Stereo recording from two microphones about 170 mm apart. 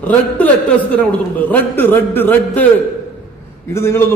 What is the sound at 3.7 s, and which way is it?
Speech, 15° left (ahead or behind).